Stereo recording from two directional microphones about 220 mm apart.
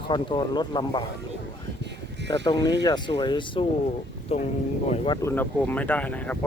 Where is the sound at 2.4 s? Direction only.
20° left (ahead or behind).